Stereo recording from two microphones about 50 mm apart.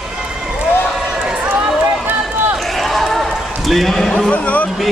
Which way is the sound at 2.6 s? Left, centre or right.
Centre.